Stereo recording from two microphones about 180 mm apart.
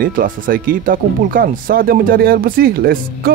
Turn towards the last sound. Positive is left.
turn(degrees=-55)  # may be behind; listen again after turning